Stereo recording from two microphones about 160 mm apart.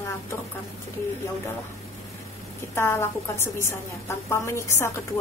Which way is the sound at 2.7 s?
15° left (ahead or behind).